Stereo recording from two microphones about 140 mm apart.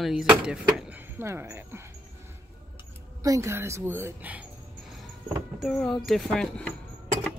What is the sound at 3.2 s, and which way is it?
A woman's voice, 20° right (ahead or behind).